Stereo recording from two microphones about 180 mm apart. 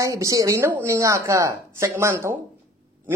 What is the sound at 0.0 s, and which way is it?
A woman's voice, 20° right (ahead or behind).